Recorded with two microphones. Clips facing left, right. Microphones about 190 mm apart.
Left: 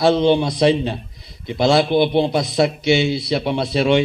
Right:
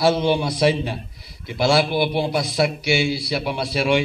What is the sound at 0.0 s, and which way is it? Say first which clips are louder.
A man's voice: left 4 dB; 20° left (ahead or behind).